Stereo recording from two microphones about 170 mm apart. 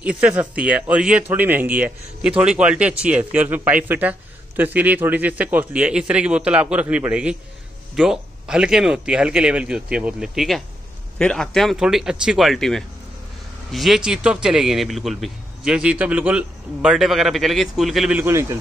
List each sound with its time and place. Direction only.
0.0 s a man's voice: 5° right (ahead or behind)
18.2 s speech: 15° right (ahead or behind)